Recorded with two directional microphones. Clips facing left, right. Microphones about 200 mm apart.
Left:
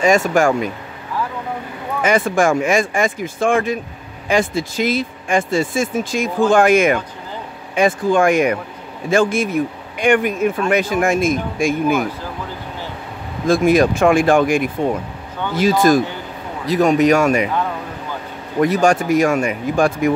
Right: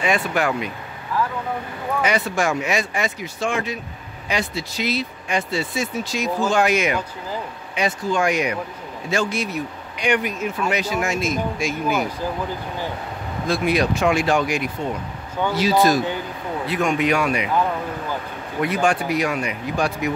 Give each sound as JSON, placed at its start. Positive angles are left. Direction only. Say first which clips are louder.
{"t": 0.0, "sound": "speech", "louder": "left 7 dB", "side_deg": 45}
{"t": 2.0, "sound": "speech", "louder": "left 7 dB", "side_deg": 50}
{"t": 13.5, "sound": "speech", "louder": "left 7 dB", "side_deg": 45}
{"t": 16.6, "sound": "a man's voice", "louder": "left 8 dB", "side_deg": 40}
{"t": 18.6, "sound": "speech", "louder": "left 6 dB", "side_deg": 40}